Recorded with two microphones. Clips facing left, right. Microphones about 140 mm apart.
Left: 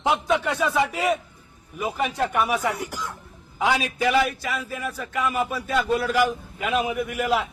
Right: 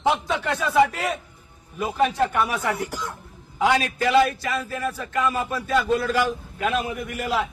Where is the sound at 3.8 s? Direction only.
10° left (ahead or behind).